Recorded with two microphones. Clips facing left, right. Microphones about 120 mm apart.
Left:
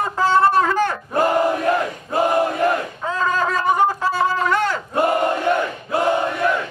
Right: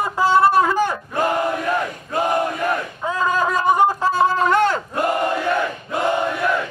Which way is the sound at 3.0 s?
10° right (ahead or behind).